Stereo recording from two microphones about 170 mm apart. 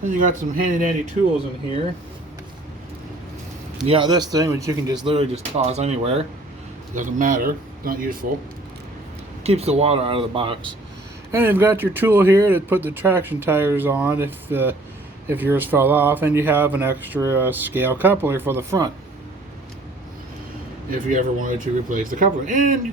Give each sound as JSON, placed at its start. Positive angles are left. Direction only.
{"t": 0.1, "sound": "speech", "side_deg": -50}
{"t": 3.8, "sound": "speech", "side_deg": -30}
{"t": 6.9, "sound": "speech", "side_deg": -50}
{"t": 9.4, "sound": "speech", "side_deg": -35}
{"t": 11.3, "sound": "speech", "side_deg": -15}
{"t": 20.9, "sound": "speech", "side_deg": -50}